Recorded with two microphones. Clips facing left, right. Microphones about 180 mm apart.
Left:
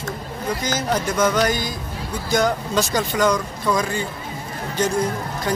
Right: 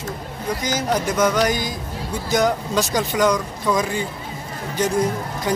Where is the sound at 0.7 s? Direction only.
15° right (ahead or behind).